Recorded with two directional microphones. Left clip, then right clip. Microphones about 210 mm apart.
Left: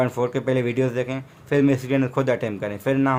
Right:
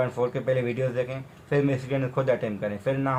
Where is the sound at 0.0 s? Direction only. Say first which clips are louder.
Left 3 dB; 50° left (ahead or behind).